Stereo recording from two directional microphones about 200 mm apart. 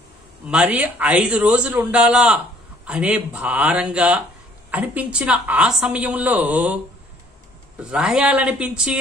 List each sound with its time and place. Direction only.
0.5 s a man's voice: 5° right (ahead or behind)
7.8 s a man's voice: 5° right (ahead or behind)